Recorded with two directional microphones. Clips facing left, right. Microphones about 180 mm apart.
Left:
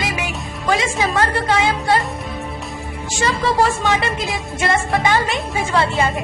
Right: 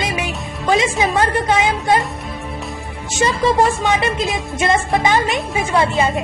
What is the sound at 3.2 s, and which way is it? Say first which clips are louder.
A woman's voice: right 2 dB; 20° right (ahead or behind).